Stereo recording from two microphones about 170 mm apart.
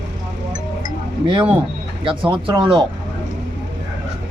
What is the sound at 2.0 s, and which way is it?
Speech, 30° right (ahead or behind).